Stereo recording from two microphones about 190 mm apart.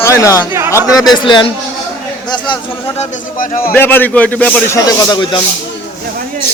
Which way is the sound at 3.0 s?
40° left (ahead or behind).